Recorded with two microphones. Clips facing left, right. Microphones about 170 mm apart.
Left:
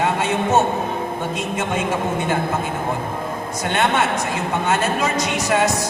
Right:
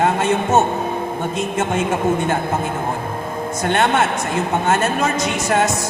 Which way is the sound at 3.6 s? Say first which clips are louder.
Right 2 dB; 50° right (ahead or behind).